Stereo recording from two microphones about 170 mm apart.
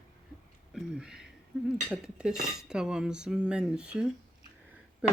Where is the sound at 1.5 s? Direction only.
Centre (ahead or behind).